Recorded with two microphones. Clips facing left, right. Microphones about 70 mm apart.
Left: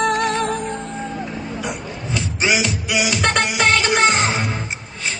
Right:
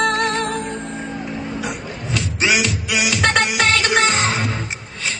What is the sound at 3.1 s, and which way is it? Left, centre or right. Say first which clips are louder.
Music: right 1 dB; left.